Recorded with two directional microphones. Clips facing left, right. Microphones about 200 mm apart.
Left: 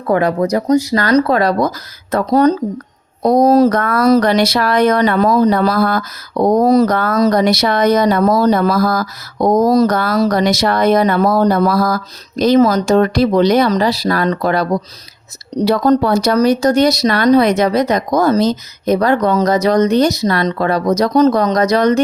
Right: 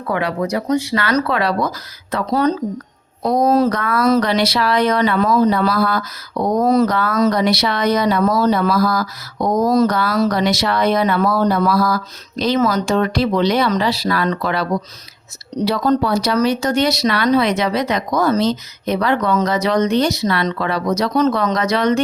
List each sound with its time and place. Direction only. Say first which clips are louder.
0.1 s speech: left 6 dB; 45° left (ahead or behind)